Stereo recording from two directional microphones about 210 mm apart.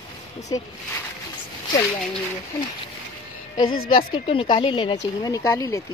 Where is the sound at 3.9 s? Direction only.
25° left (ahead or behind).